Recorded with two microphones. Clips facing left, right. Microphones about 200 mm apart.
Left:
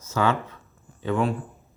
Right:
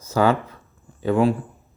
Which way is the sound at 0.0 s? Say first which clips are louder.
Right 5 dB; 35° right (ahead or behind).